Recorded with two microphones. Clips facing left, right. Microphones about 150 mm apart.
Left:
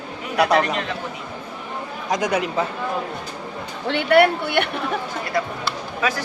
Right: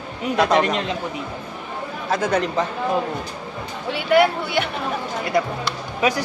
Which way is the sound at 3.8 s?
70° left (ahead or behind).